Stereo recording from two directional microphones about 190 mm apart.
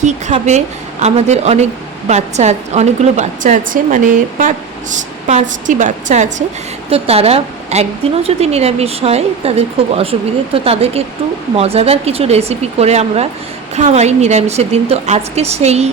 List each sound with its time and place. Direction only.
0.0 s a woman's voice: 35° right (ahead or behind)